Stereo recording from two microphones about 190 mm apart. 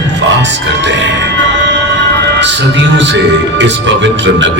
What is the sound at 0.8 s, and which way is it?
Music, 65° right (ahead or behind).